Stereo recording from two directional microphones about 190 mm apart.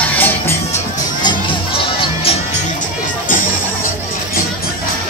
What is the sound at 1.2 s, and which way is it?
Music, 25° left (ahead or behind).